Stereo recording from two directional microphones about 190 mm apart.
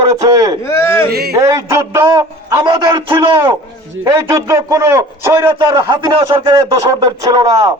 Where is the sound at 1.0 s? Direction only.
55° right (ahead or behind).